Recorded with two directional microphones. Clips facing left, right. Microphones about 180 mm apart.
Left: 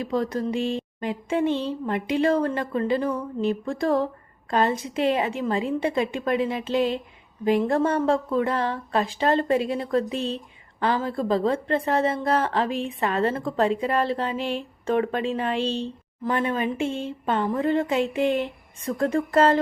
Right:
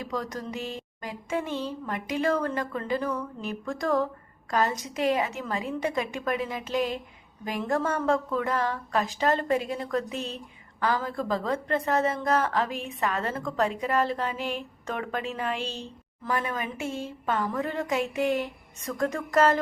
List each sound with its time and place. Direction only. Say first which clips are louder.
0.8 s a woman's voice: left 9 dB; 25° left (ahead or behind)